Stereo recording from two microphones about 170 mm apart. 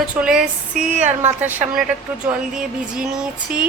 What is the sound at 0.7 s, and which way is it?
Speech, 45° right (ahead or behind).